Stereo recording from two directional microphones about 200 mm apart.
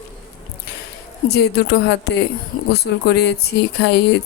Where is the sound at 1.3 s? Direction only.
55° left (ahead or behind).